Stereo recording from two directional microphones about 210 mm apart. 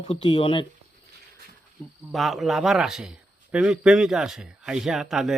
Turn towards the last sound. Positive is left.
turn(degrees=-5)  # may be behind; listen again after turning